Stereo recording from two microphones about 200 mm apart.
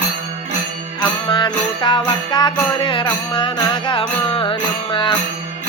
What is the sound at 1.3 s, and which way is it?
Music, 25° left (ahead or behind).